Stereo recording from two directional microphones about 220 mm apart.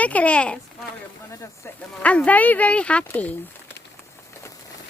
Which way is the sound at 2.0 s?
5° left (ahead or behind).